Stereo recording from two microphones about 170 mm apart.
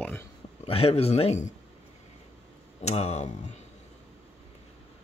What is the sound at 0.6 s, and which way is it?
Speech, 35° left (ahead or behind).